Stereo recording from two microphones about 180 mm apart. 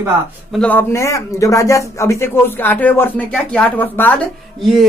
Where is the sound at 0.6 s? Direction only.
10° left (ahead or behind).